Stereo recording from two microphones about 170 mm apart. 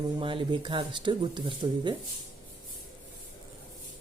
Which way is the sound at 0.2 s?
30° right (ahead or behind).